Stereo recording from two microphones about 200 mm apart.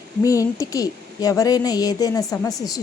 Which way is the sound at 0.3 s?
15° left (ahead or behind).